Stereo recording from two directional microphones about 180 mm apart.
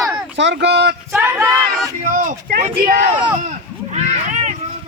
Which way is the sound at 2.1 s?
50° right (ahead or behind).